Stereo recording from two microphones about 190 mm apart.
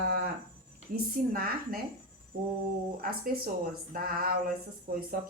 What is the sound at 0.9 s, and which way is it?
Speech, 50° right (ahead or behind).